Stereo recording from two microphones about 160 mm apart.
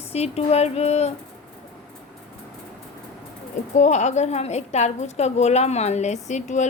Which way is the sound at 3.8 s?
50° left (ahead or behind).